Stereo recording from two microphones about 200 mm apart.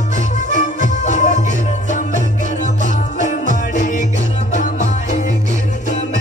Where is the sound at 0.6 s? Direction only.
40° left (ahead or behind).